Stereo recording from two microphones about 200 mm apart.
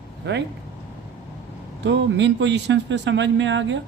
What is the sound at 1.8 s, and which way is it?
Speech, 65° right (ahead or behind).